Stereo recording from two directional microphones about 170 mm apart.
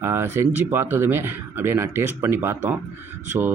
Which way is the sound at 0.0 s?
15° right (ahead or behind).